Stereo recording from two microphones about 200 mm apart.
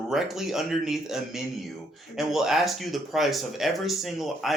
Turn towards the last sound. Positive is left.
turn(degrees=0)  # may be behind; listen again after turning